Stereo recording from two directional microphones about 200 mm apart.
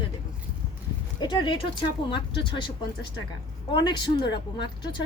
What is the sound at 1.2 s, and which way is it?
A woman's voice, 20° left (ahead or behind).